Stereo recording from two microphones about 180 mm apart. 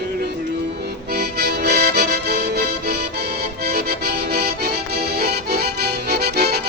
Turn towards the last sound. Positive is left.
turn(degrees=-65)  # may be behind; listen again after turning